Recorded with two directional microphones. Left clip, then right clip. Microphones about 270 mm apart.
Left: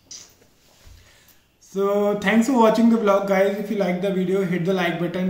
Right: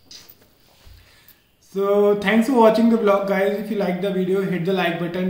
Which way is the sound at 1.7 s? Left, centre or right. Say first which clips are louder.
Right 3 dB; centre.